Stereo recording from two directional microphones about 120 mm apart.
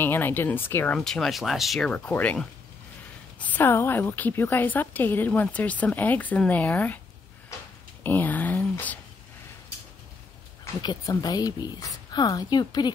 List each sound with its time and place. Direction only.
0.0 s a woman's voice: 15° left (ahead or behind)
0.9 s a woman's voice: 5° left (ahead or behind)
8.0 s a sound: 15° left (ahead or behind)
10.8 s a woman's voice: 35° left (ahead or behind)